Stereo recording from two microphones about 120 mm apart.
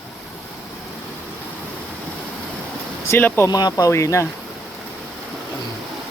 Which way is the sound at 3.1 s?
20° left (ahead or behind).